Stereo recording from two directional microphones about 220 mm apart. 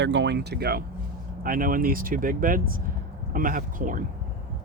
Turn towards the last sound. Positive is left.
turn(degrees=-35)  # may be behind; listen again after turning